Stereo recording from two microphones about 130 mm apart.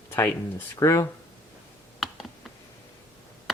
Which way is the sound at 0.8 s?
25° left (ahead or behind).